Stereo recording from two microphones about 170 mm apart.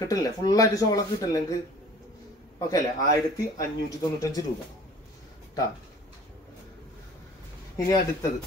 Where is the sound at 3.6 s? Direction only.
20° left (ahead or behind).